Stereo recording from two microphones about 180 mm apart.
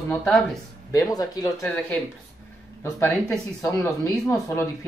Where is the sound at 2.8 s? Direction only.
15° left (ahead or behind).